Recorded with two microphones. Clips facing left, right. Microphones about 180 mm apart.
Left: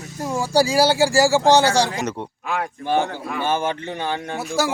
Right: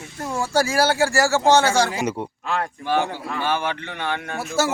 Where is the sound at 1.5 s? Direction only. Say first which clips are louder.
Right 1 dB; 35° left (ahead or behind).